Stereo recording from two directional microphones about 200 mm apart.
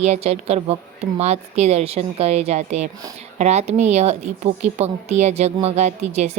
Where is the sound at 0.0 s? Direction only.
35° right (ahead or behind).